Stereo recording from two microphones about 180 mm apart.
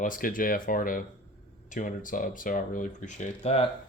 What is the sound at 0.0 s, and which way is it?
Speech, 50° left (ahead or behind).